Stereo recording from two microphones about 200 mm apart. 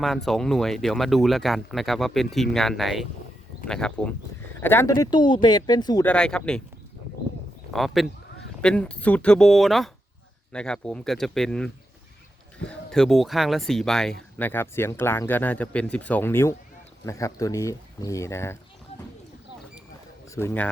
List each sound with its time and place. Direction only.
0.3 s speech: centre (ahead or behind); by 6.1 s 20° left (ahead or behind)
6.1 s speech: 5° left (ahead or behind)
7.7 s speech: centre (ahead or behind)
20.3 s speech: 10° left (ahead or behind)